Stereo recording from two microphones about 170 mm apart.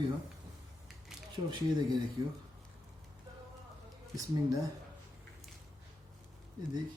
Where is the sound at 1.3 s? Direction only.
25° right (ahead or behind).